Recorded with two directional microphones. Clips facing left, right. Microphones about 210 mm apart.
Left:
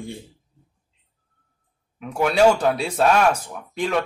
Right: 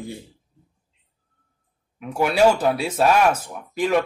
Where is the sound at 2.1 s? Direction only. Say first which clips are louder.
Left 1 dB; 5° right (ahead or behind).